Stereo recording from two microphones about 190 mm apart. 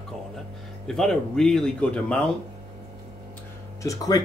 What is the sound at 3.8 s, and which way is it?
Speech, 15° left (ahead or behind).